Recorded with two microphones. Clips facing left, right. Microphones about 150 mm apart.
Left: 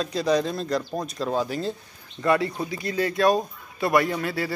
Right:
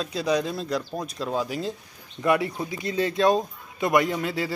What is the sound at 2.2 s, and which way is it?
A man's voice, 15° right (ahead or behind).